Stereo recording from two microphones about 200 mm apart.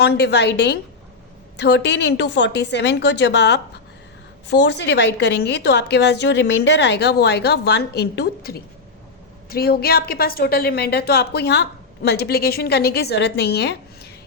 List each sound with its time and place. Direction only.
0.0 s a woman's voice: 55° left (ahead or behind)